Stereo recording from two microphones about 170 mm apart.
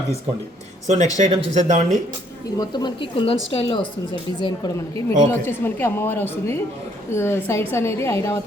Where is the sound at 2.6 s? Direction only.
25° left (ahead or behind).